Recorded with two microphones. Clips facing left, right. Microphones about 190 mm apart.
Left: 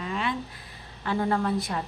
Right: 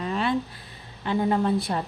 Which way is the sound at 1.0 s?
20° right (ahead or behind).